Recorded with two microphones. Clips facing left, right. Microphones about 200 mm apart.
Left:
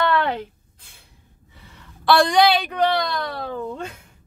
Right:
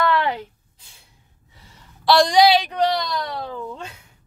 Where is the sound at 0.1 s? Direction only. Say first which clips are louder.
Even; 55° left (ahead or behind).